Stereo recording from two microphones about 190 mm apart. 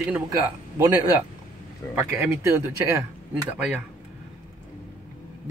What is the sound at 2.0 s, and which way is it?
Speech, 10° right (ahead or behind).